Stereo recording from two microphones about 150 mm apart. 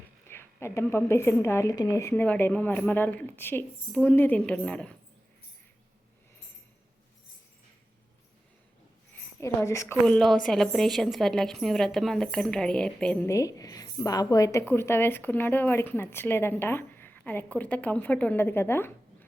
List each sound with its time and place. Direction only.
0.3 s a woman's voice: 15° left (ahead or behind)
9.1 s a woman's voice: 15° left (ahead or behind)
10.1 s a woman's voice: 5° left (ahead or behind)
13.2 s a woman's voice: 20° left (ahead or behind)